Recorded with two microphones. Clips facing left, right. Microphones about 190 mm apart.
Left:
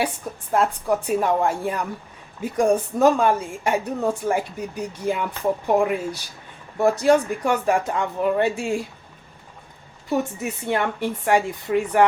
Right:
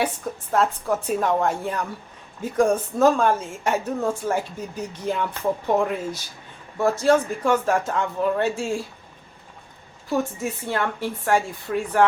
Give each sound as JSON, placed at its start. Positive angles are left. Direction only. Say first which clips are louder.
{"t": 0.5, "sound": "a woman's voice", "louder": "left 1 dB", "side_deg": 10}
{"t": 10.6, "sound": "a woman's voice", "louder": "left 4 dB", "side_deg": 15}